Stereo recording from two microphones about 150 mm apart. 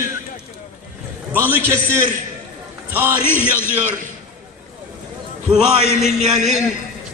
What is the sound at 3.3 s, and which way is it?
Speech, 15° left (ahead or behind).